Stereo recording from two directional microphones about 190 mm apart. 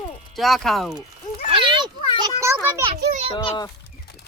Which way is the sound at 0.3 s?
Centre (ahead or behind).